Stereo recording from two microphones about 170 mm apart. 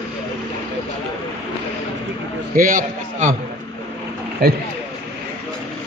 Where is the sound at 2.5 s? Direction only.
50° right (ahead or behind).